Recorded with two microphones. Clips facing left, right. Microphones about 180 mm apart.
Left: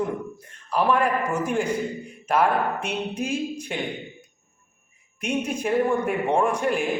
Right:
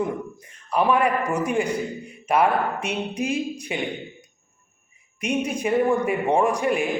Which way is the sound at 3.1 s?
70° right (ahead or behind).